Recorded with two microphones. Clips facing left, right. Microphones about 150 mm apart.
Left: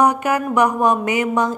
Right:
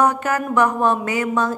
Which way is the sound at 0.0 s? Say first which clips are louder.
Left 2 dB; 15° left (ahead or behind).